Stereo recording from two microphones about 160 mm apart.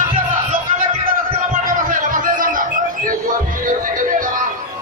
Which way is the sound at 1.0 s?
55° right (ahead or behind).